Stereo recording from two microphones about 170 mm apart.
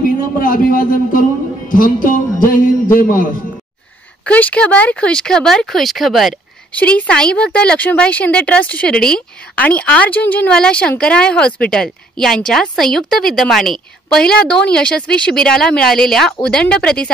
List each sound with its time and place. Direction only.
0.0 s a man's voice: 55° left (ahead or behind)
4.3 s speech: 10° left (ahead or behind)